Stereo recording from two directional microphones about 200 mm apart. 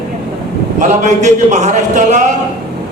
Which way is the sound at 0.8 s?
35° right (ahead or behind).